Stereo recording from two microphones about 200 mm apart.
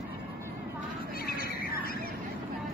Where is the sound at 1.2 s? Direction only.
50° left (ahead or behind).